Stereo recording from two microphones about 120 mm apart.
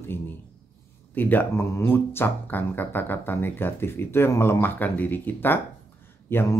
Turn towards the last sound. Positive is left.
turn(degrees=20)  # may be behind; listen again after turning